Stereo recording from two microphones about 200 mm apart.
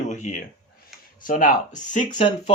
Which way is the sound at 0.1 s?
40° left (ahead or behind).